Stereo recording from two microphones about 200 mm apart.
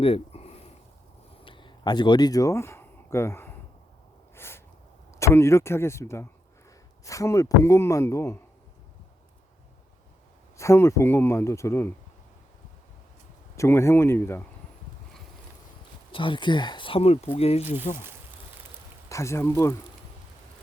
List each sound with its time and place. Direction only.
0.0 s a sound: 30° left (ahead or behind); by 4.6 s 10° left (ahead or behind)
5.2 s speech: 15° left (ahead or behind)
10.6 s speech: 15° left (ahead or behind)
13.6 s speech: 15° left (ahead or behind)
16.1 s speech: 25° left (ahead or behind)
19.0 s speech: 15° left (ahead or behind)